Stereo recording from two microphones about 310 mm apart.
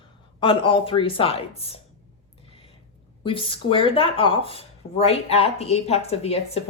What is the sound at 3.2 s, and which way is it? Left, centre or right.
Speech, centre.